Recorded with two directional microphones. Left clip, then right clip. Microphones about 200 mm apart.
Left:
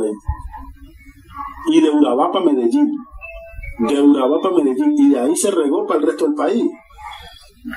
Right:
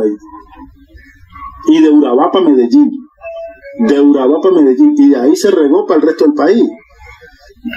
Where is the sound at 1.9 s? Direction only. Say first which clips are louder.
Right 6 dB; 25° right (ahead or behind).